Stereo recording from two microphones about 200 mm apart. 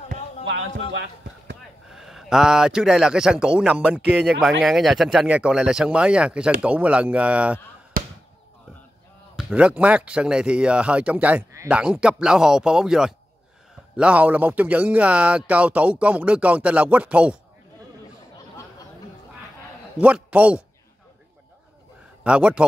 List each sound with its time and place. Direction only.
1.9 s speech: centre (ahead or behind)
8.0 s basketball bounce: 45° right (ahead or behind)
9.4 s speech: 5° right (ahead or behind)
20.0 s speech: 5° right (ahead or behind)
22.2 s speech: 5° right (ahead or behind)